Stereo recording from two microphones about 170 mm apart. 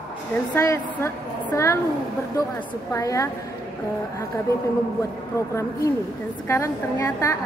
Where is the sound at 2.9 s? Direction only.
20° left (ahead or behind).